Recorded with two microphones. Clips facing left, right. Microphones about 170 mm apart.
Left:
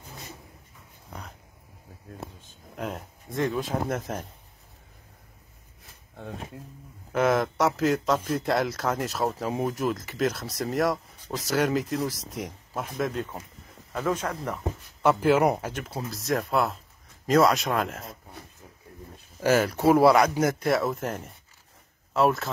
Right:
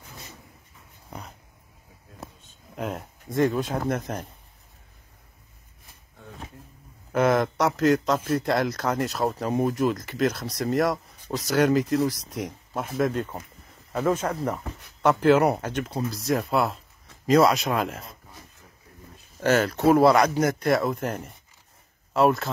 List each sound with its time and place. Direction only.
2.8 s speech: centre (ahead or behind)
6.1 s a sound: 75° left (ahead or behind)
7.1 s speech: centre (ahead or behind)
15.0 s speech: 10° left (ahead or behind)
19.4 s speech: 10° left (ahead or behind)